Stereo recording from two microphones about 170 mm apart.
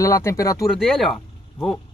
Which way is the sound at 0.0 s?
20° left (ahead or behind).